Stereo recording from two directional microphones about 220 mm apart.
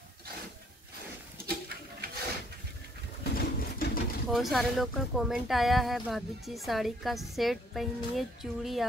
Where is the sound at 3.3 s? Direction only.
45° left (ahead or behind).